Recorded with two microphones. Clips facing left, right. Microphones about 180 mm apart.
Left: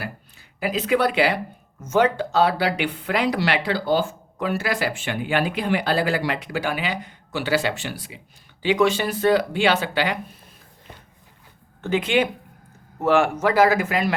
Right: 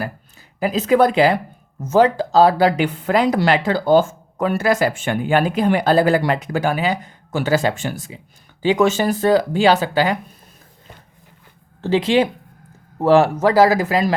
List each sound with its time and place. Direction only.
0.6 s speech: 40° right (ahead or behind)
11.8 s speech: 35° right (ahead or behind)